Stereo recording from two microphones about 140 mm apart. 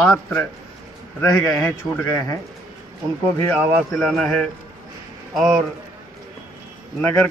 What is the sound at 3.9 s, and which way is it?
Speech, centre (ahead or behind).